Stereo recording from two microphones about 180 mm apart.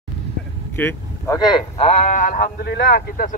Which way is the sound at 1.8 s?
40° left (ahead or behind).